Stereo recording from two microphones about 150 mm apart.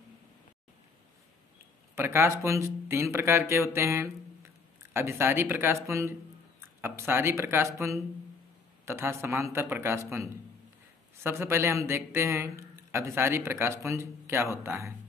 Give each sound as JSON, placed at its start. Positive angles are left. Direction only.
{"t": 2.0, "sound": "speech", "side_deg": -20}